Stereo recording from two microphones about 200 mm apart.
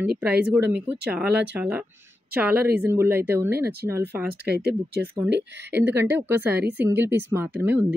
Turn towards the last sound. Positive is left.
turn(degrees=-10)  # may be behind; listen again after turning